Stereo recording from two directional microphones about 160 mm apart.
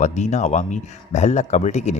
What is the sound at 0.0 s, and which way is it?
A man's voice, 45° left (ahead or behind).